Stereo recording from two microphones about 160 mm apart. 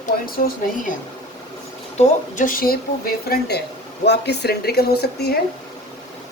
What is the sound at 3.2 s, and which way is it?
Speech, 85° left.